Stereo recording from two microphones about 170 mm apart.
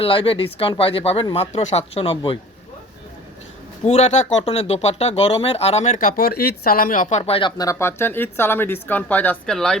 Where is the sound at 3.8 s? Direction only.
40° left (ahead or behind).